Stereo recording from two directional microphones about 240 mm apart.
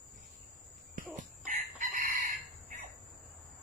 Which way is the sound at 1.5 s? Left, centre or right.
Right.